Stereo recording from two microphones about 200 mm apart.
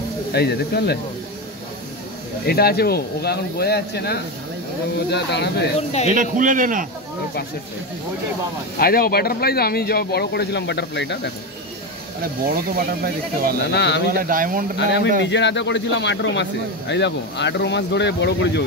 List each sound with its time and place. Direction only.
0.3 s speech: 55° left (ahead or behind)
2.4 s speech: 50° left (ahead or behind)
5.8 s speech: 30° left (ahead or behind)
6.3 s a man's voice: 40° right (ahead or behind)
8.7 s speech: 50° left (ahead or behind)
12.2 s speech: 50° right (ahead or behind)
13.7 s speech: 60° left (ahead or behind)
14.3 s speech: 45° right (ahead or behind)
14.8 s speech: 60° left (ahead or behind)